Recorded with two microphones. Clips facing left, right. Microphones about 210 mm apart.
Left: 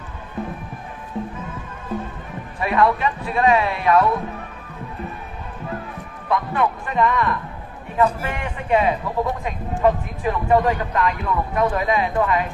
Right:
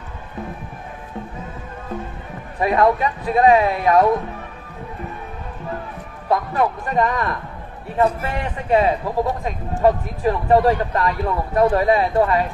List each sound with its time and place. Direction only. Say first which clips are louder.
1.1 s music: left 5 dB; centre (ahead or behind)
2.6 s a man's voice: right 2 dB; 35° right (ahead or behind)
6.2 s a man's voice: right 2 dB; 40° right (ahead or behind)